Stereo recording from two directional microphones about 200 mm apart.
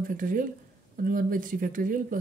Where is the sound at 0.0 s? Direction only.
45° right (ahead or behind).